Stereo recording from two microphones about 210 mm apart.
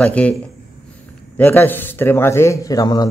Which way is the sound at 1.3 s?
10° left (ahead or behind).